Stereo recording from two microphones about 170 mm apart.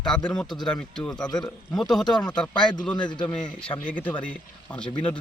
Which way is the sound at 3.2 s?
10° left (ahead or behind).